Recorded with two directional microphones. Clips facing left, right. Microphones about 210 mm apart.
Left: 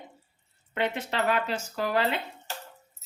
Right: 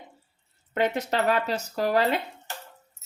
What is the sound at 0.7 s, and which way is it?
A woman's voice, 40° right (ahead or behind).